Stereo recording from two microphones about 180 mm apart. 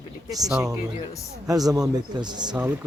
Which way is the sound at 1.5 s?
20° right (ahead or behind).